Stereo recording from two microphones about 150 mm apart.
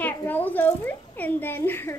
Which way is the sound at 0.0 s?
10° left (ahead or behind).